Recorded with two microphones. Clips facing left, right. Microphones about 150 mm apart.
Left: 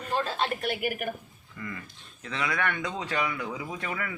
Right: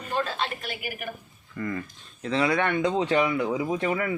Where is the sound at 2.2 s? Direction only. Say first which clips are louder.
Right 7 dB; 35° right (ahead or behind).